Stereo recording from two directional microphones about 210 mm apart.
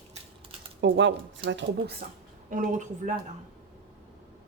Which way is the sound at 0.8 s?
60° right (ahead or behind).